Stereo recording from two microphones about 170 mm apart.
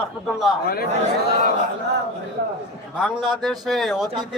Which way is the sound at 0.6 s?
65° left (ahead or behind).